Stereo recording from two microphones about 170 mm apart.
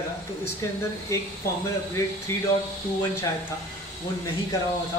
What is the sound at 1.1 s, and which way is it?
Speech, 15° left (ahead or behind).